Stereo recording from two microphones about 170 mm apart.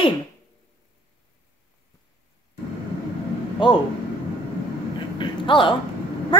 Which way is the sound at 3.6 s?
25° left (ahead or behind).